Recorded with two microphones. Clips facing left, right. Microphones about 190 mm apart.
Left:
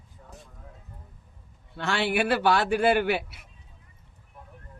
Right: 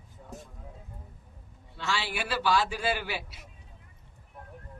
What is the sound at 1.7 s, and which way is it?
A man's voice, 60° left (ahead or behind).